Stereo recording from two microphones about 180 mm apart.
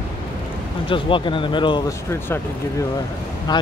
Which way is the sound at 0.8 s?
30° left (ahead or behind).